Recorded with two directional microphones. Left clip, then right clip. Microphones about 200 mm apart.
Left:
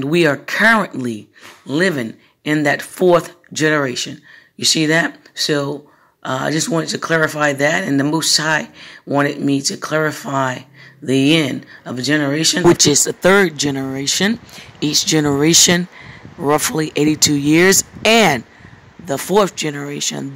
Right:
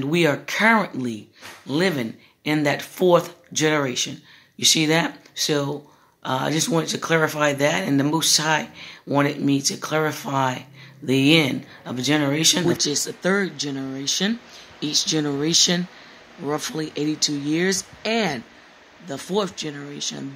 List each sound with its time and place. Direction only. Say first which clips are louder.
0.0 s speech: left 5 dB; 25° left (ahead or behind)
12.7 s speech: left 9 dB; 35° left (ahead or behind)